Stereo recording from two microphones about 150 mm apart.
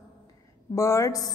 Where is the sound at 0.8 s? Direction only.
20° left (ahead or behind).